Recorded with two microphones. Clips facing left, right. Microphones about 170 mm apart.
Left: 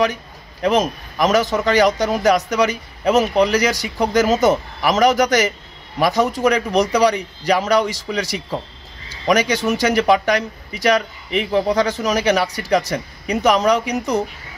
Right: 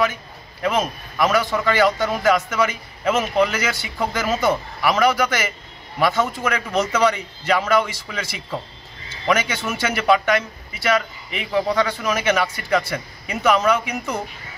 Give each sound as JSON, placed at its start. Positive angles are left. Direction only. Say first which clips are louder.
{"t": 0.0, "sound": "a man's voice", "louder": "left 3 dB", "side_deg": 40}